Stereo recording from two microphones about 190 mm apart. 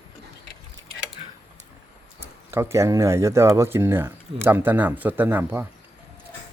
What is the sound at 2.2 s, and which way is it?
Speech, 15° right (ahead or behind).